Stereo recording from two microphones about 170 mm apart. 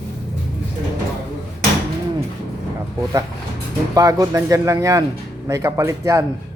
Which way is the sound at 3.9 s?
20° right (ahead or behind).